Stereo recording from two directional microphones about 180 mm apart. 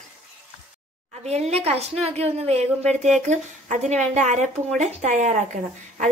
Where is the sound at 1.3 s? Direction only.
35° right (ahead or behind).